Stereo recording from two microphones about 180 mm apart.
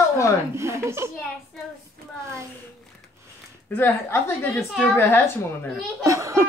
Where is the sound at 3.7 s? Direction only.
10° left (ahead or behind).